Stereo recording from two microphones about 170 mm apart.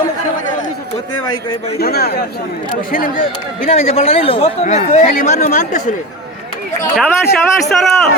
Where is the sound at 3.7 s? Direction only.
35° left (ahead or behind).